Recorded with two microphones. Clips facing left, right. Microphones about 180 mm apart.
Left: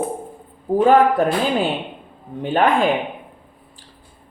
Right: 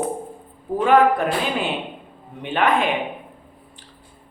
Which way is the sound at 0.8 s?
40° left (ahead or behind).